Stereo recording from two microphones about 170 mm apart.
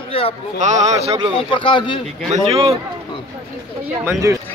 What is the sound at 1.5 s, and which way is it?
Speech, 30° left (ahead or behind).